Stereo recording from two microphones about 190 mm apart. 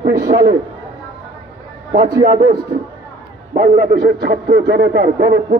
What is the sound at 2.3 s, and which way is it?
Speech, 55° right (ahead or behind).